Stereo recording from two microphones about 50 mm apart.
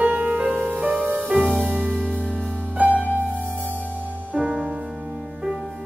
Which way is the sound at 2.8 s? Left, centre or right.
Right.